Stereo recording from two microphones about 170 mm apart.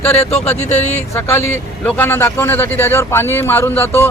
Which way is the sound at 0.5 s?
40° left (ahead or behind).